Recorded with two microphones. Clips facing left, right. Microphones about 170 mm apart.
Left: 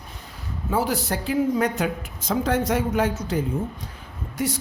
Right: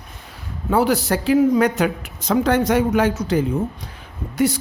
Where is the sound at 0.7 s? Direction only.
70° right (ahead or behind).